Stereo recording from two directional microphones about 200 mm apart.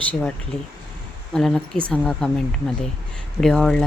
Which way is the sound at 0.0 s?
5° left (ahead or behind).